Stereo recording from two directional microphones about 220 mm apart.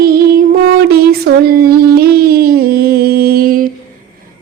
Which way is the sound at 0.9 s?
45° right (ahead or behind).